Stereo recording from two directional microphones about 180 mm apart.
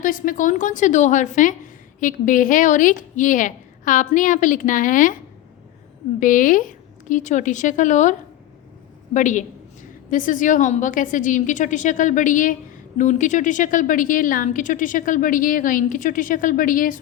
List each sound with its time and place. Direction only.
0.0 s a woman's voice: 50° left (ahead or behind)
6.1 s a woman's voice: 45° left (ahead or behind)
9.1 s a woman's voice: 45° left (ahead or behind)